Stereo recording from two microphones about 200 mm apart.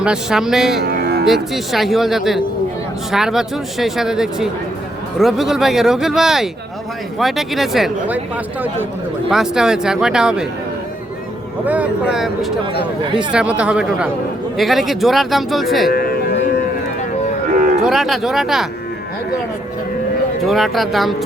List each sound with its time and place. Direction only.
0.0 s speech: 5° right (ahead or behind)
0.9 s music: 55° right (ahead or behind)
1.2 s speech: centre (ahead or behind)
9.3 s speech: 5° right (ahead or behind)
11.6 s speech: 5° right (ahead or behind)
15.9 s music: 50° left (ahead or behind)
17.5 s cattle: 40° right (ahead or behind)
17.7 s speech: centre (ahead or behind)
20.4 s speech: centre (ahead or behind)